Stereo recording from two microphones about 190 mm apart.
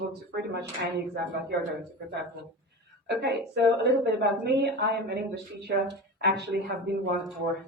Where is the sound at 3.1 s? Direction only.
65° right (ahead or behind).